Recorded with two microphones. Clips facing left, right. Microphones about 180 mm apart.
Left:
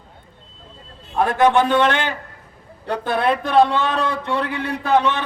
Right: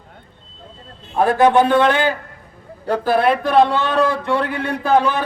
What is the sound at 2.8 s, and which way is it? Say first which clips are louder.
A man's voice: right 4 dB; 30° right (ahead or behind).